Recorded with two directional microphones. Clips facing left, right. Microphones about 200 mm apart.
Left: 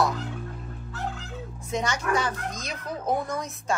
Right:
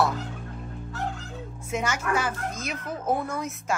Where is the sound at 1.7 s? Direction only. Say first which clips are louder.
Even; 5° right (ahead or behind).